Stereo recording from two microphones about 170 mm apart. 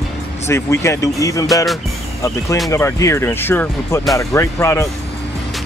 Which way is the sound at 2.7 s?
15° left (ahead or behind).